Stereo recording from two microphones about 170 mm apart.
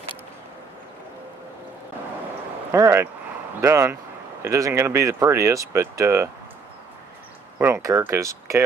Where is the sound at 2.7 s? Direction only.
15° right (ahead or behind).